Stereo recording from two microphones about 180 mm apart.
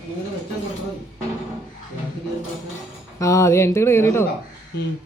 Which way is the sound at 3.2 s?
15° left (ahead or behind).